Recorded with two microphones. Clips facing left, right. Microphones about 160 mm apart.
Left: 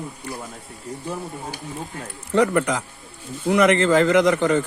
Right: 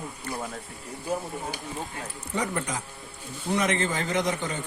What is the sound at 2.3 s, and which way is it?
A man's voice, 85° left.